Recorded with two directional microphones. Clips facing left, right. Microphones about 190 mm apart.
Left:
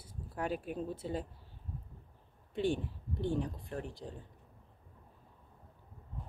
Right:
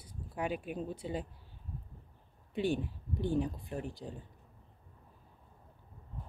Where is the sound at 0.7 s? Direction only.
35° left (ahead or behind).